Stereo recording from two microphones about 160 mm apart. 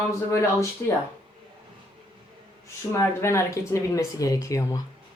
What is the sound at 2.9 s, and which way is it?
Speech, 15° left (ahead or behind).